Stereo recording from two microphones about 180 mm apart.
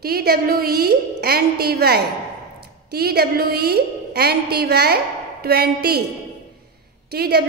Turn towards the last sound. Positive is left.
turn(degrees=-60)  # may be behind; listen again after turning